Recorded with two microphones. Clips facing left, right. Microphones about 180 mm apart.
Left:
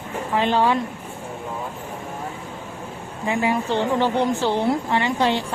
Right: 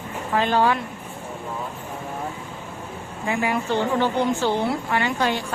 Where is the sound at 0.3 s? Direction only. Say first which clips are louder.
Left 1 dB; 20° left (ahead or behind).